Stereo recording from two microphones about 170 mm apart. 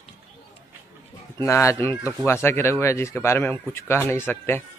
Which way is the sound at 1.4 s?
15° left (ahead or behind).